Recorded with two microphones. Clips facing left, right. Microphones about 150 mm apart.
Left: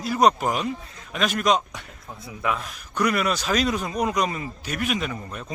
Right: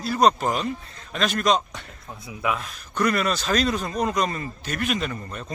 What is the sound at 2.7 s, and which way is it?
Speech, 10° left (ahead or behind).